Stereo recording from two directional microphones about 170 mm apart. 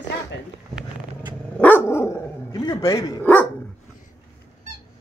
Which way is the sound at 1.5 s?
10° left (ahead or behind).